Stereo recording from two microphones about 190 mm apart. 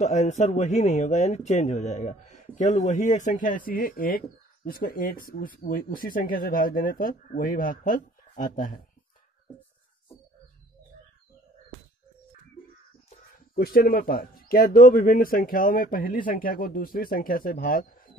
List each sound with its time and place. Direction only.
0.0 s a man's voice: 35° left (ahead or behind)
13.6 s speech: 55° left (ahead or behind)